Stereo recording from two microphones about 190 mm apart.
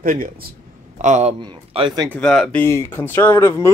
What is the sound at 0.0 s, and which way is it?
Speech, 45° right (ahead or behind).